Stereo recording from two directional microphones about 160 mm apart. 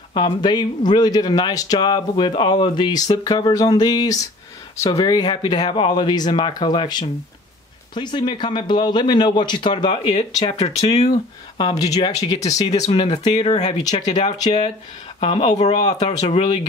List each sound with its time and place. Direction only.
0.1 s speech: 30° left (ahead or behind)
9.8 s speech: 40° left (ahead or behind)
11.5 s speech: 25° left (ahead or behind)
12.6 s speech: 40° left (ahead or behind)